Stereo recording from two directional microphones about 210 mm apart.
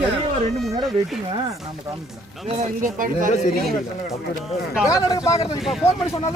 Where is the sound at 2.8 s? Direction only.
40° right (ahead or behind).